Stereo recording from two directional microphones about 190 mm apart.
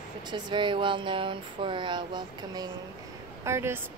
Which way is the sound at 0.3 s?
25° right (ahead or behind).